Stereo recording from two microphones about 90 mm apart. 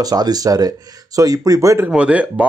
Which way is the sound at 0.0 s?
45° right (ahead or behind).